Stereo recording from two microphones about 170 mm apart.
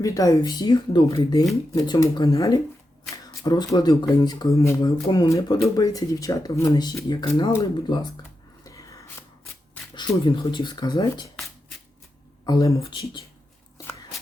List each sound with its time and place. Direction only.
0.0 s speech: 20° left (ahead or behind)
8.6 s a sound: 20° left (ahead or behind)
9.9 s speech: 30° left (ahead or behind)
12.5 s speech: 20° left (ahead or behind)